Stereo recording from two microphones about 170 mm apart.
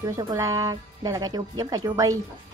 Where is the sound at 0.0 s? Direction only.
20° right (ahead or behind).